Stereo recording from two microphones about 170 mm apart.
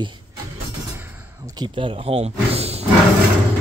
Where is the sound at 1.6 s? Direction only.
30° right (ahead or behind).